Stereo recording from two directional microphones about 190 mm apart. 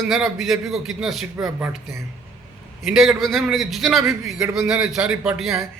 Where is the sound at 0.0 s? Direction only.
Centre (ahead or behind).